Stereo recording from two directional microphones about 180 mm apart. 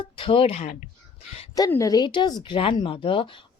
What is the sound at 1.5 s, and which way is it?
A woman's voice, 20° left (ahead or behind).